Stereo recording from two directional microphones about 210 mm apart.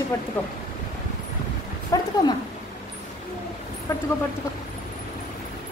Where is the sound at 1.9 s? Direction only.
15° left (ahead or behind).